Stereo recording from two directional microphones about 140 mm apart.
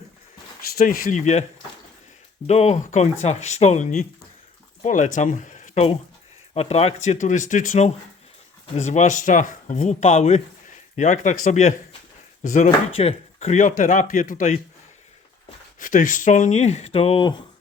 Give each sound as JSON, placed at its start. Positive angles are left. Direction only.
{"t": 0.8, "sound": "speech", "side_deg": 90}
{"t": 2.5, "sound": "speech", "side_deg": 50}
{"t": 8.7, "sound": "speech", "side_deg": 55}
{"t": 13.0, "sound": "speech", "side_deg": 45}
{"t": 15.8, "sound": "speech", "side_deg": 70}